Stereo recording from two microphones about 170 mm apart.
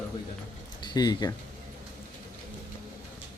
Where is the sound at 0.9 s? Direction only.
25° left (ahead or behind).